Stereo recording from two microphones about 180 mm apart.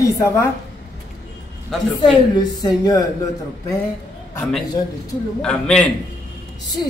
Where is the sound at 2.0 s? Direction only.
20° left (ahead or behind).